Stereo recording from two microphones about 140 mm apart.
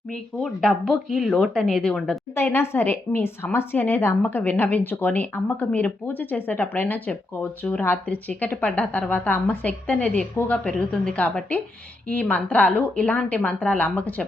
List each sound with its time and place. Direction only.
0.4 s speech: 5° left (ahead or behind)
2.3 s a woman's voice: 15° left (ahead or behind)